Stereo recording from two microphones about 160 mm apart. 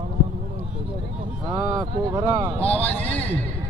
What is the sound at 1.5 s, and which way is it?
Speech, 20° right (ahead or behind).